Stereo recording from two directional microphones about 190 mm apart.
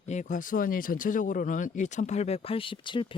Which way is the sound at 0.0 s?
40° left (ahead or behind).